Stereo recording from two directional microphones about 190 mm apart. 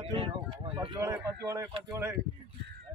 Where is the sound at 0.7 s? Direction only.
15° right (ahead or behind).